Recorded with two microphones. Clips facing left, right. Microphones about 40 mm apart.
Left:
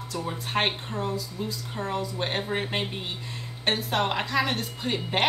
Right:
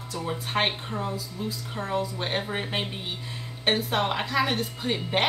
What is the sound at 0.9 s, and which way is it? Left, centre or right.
Speech, centre.